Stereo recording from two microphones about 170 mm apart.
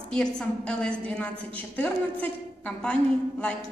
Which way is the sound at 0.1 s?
5° left (ahead or behind).